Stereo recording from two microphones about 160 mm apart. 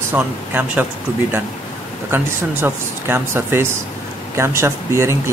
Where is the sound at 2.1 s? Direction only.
15° right (ahead or behind).